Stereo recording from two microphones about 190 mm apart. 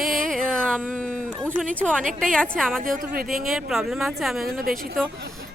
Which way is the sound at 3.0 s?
50° right (ahead or behind).